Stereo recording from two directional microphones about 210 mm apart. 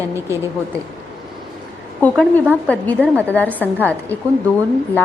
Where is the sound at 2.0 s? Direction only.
10° left (ahead or behind).